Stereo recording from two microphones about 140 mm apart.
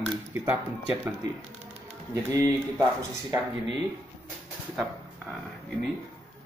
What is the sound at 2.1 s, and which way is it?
Speech, 25° right (ahead or behind).